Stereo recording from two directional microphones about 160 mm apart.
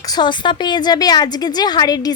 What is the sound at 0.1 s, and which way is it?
A woman's voice, 30° left (ahead or behind).